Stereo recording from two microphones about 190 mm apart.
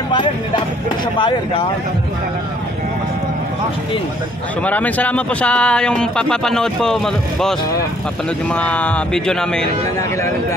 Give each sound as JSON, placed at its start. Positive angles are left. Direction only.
{"t": 1.1, "sound": "speech", "side_deg": 25}
{"t": 4.6, "sound": "speech", "side_deg": 10}
{"t": 8.5, "sound": "speech", "side_deg": 5}